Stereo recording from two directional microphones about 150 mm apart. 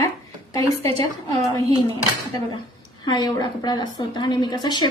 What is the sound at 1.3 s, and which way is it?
Speech, 25° left (ahead or behind).